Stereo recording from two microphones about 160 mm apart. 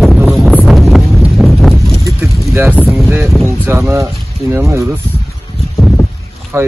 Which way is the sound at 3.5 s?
15° right (ahead or behind).